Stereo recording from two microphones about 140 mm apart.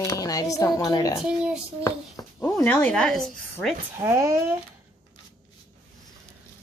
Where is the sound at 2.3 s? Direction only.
15° left (ahead or behind).